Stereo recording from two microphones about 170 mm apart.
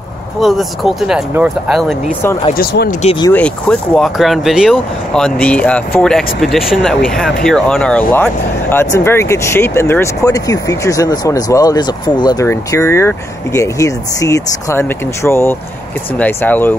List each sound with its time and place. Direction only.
0.4 s speech: centre (ahead or behind)
2.5 s speech: 65° left (ahead or behind)
3.3 s speech: 5° left (ahead or behind)